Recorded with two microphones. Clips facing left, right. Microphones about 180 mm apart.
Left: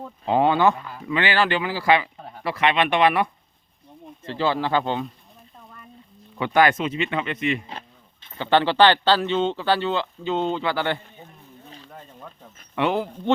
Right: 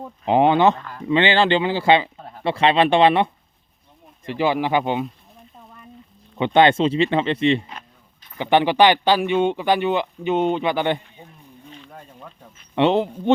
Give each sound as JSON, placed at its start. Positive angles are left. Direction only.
{"t": 0.0, "sound": "speech", "side_deg": -20}
{"t": 0.8, "sound": "speech", "side_deg": 10}
{"t": 1.0, "sound": "speech", "side_deg": -25}
{"t": 4.3, "sound": "speech", "side_deg": -15}
{"t": 6.3, "sound": "speech", "side_deg": -25}
{"t": 7.7, "sound": "a sound", "side_deg": 30}
{"t": 8.4, "sound": "speech", "side_deg": -15}
{"t": 11.9, "sound": "a sound", "side_deg": -10}
{"t": 12.7, "sound": "speech", "side_deg": -25}